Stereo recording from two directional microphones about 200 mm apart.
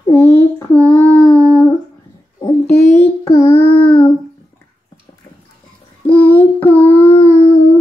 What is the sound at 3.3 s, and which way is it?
Child singing, 10° left (ahead or behind).